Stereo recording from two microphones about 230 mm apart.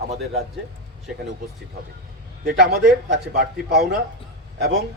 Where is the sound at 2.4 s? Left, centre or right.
Right.